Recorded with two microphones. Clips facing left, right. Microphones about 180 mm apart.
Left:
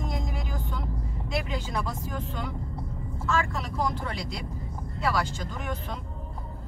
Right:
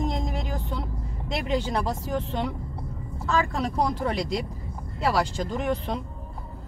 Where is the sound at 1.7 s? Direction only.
35° right (ahead or behind).